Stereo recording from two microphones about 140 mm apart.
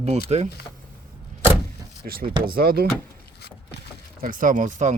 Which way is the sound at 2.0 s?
90° right.